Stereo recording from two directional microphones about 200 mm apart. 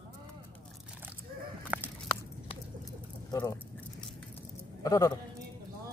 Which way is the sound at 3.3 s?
15° left (ahead or behind).